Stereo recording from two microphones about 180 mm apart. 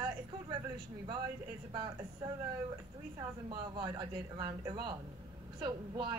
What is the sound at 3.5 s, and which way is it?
Speech, 25° right (ahead or behind).